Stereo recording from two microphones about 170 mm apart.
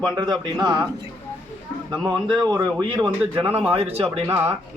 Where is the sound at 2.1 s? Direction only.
25° right (ahead or behind).